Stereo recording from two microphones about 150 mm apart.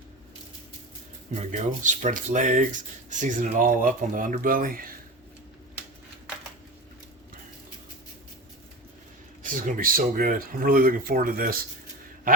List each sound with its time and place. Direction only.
1.5 s speech: 55° right (ahead or behind)
9.4 s speech: 65° right (ahead or behind)